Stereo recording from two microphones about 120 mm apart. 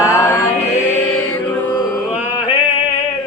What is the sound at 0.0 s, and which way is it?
Mantra, 25° left (ahead or behind).